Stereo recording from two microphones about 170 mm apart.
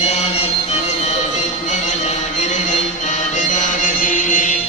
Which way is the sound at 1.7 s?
45° left (ahead or behind).